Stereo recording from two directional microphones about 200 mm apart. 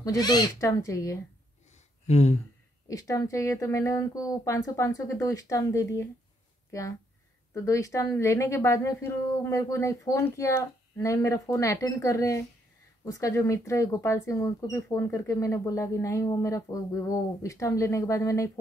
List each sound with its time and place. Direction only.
0.0 s speech: 20° left (ahead or behind)
2.0 s speech: 35° left (ahead or behind)
2.9 s speech: 15° left (ahead or behind)
7.5 s speech: 15° left (ahead or behind)